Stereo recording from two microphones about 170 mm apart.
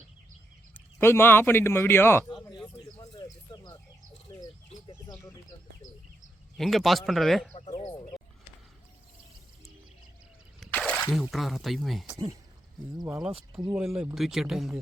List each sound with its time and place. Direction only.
0.9 s a man's voice: 15° left (ahead or behind)
2.4 s a sound: 25° left (ahead or behind)
4.3 s bird: 20° left (ahead or behind)
5.1 s a man's voice: 15° left (ahead or behind)
6.6 s speech: centre (ahead or behind)
7.5 s a sound: 40° left (ahead or behind)
10.6 s speech: 10° left (ahead or behind)
13.1 s speech: 5° right (ahead or behind)